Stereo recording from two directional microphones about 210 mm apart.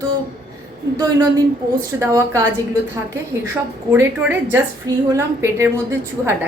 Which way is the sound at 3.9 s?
10° right (ahead or behind).